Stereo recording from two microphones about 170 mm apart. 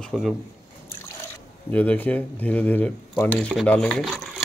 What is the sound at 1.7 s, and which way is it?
Speech, 10° left (ahead or behind).